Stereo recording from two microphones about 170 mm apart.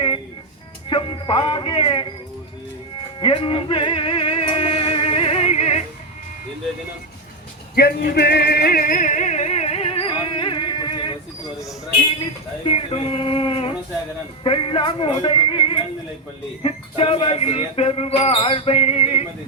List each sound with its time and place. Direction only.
0.9 s a man's voice: 30° left (ahead or behind)
3.2 s music: 30° left (ahead or behind)
7.8 s music: 65° left (ahead or behind); by 11.2 s 30° left (ahead or behind)
12.6 s music: 35° left (ahead or behind)